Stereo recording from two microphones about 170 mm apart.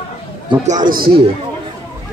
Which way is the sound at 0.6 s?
50° right (ahead or behind).